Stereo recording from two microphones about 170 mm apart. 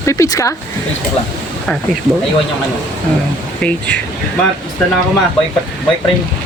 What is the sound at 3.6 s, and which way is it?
Speech, 5° left (ahead or behind).